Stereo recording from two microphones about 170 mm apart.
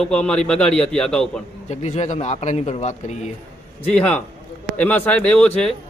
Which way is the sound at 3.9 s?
10° left (ahead or behind).